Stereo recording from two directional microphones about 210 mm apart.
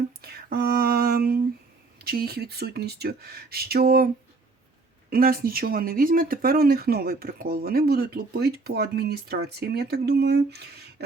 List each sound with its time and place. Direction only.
0.2 s speech: 45° right (ahead or behind)
5.1 s speech: 45° right (ahead or behind)